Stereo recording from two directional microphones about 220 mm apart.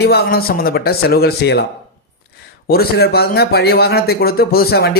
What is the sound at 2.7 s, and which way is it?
Speech, 45° left (ahead or behind).